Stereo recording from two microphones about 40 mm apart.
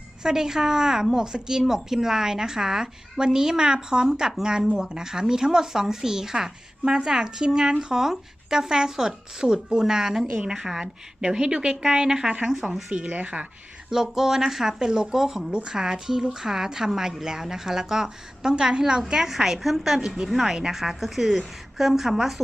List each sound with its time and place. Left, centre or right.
0.2 s speech: centre
12.5 s speech: centre
12.9 s speech: right
13.9 s a woman's voice: centre
20.1 s speech: centre
20.3 s a woman's voice: centre